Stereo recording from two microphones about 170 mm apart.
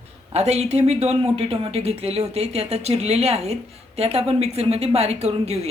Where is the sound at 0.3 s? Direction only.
40° right (ahead or behind).